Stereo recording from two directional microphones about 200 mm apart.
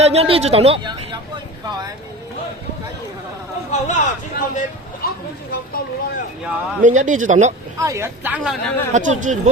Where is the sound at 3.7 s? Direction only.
35° left (ahead or behind).